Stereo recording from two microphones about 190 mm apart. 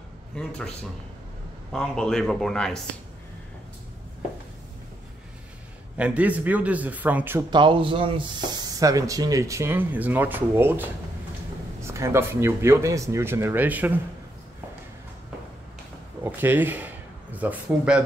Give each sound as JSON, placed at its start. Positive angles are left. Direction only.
{"t": 0.4, "sound": "a man's voice", "side_deg": 5}
{"t": 5.9, "sound": "speech", "side_deg": -5}
{"t": 7.5, "sound": "speech", "side_deg": -25}
{"t": 16.3, "sound": "speech", "side_deg": -10}